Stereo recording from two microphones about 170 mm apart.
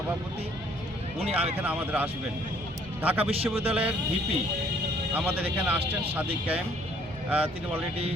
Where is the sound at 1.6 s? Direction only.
10° right (ahead or behind).